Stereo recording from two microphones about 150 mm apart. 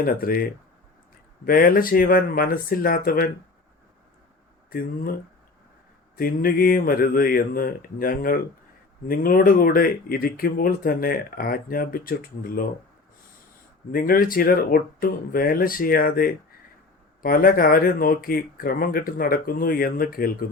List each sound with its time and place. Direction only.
0.0 s speech: 75° left (ahead or behind)
1.5 s speech: 75° left (ahead or behind)
4.7 s speech: 75° left (ahead or behind)
6.1 s speech: 75° left (ahead or behind)
13.9 s speech: 75° left (ahead or behind)